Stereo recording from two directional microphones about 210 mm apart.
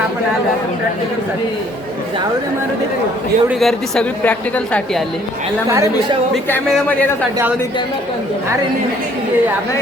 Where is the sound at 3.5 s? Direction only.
Centre (ahead or behind).